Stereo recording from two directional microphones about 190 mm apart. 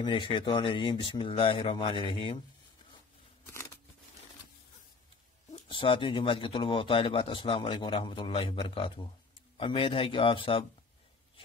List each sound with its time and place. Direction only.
0.0 s a man's voice: 25° left (ahead or behind)
5.5 s a man's voice: 30° left (ahead or behind)